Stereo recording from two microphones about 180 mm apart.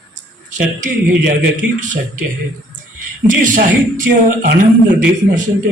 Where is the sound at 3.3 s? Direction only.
50° right (ahead or behind).